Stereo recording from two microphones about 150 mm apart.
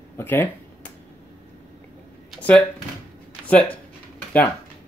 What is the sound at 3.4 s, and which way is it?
Speech, 10° left (ahead or behind).